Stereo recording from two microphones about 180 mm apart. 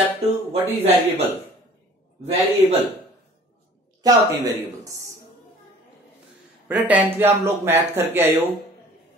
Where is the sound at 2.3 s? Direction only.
40° right (ahead or behind).